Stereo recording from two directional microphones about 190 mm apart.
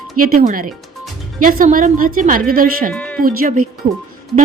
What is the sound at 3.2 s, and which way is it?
Speech, 50° right (ahead or behind).